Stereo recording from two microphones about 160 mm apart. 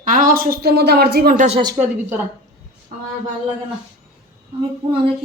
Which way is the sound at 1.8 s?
10° right (ahead or behind).